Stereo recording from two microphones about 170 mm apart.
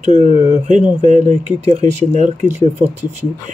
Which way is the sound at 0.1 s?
35° left (ahead or behind).